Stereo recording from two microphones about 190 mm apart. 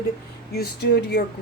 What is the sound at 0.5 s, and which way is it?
Speech, 55° left (ahead or behind).